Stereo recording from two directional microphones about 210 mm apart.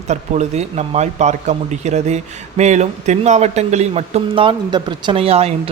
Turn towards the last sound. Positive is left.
turn(degrees=-30)  # may be behind; listen again after turning